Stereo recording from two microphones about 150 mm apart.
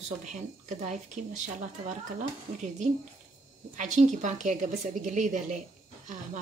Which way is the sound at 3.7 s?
55° right (ahead or behind).